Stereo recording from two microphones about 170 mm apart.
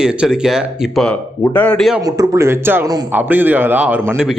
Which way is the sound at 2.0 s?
20° right (ahead or behind).